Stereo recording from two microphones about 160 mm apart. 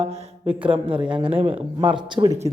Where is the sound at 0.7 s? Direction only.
35° right (ahead or behind).